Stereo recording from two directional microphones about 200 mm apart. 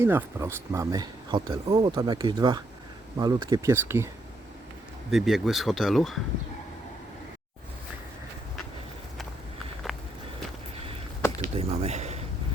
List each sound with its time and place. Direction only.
0.0 s speech: 10° right (ahead or behind)
5.1 s speech: centre (ahead or behind)
9.8 s walk: centre (ahead or behind)
11.3 s a sound: 30° right (ahead or behind)